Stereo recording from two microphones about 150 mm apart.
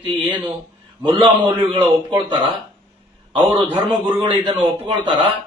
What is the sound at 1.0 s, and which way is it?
Speech, 40° right (ahead or behind).